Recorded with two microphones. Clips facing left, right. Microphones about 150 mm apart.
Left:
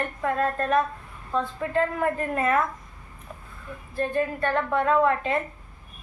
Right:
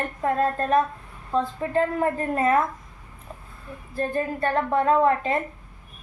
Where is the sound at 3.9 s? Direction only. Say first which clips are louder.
Even; 35° right (ahead or behind).